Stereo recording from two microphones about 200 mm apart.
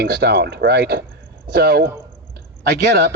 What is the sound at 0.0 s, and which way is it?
A man's voice, 55° right (ahead or behind).